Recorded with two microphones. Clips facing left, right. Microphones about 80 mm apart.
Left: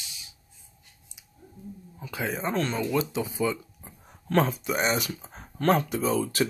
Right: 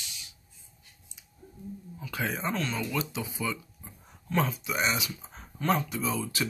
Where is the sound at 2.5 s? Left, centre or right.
Left.